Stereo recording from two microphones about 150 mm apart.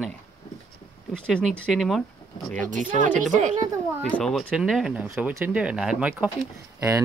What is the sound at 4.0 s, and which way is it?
Speech, 10° left (ahead or behind).